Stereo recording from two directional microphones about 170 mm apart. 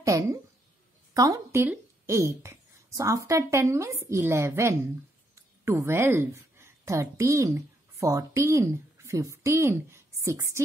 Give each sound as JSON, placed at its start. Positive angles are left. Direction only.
{"t": 0.0, "sound": "a woman's voice", "side_deg": -20}